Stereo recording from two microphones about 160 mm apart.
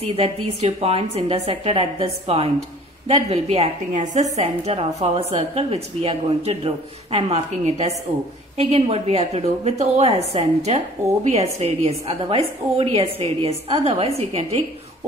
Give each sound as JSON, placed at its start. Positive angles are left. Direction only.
{"t": 0.0, "sound": "a woman's voice", "side_deg": -40}